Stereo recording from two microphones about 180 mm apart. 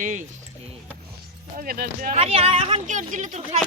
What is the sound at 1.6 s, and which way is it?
Speech, 55° right (ahead or behind).